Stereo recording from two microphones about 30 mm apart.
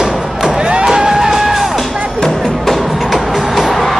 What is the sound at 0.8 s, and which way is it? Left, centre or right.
Music, centre.